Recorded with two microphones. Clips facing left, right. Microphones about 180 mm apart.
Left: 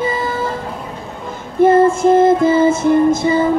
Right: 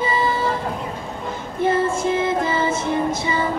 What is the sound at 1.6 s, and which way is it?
Music, 50° left (ahead or behind).